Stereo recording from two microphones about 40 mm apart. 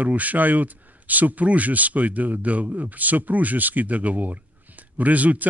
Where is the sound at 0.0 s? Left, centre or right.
Right.